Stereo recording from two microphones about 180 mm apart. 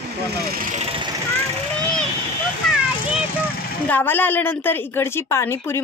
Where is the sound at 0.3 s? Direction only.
60° right (ahead or behind).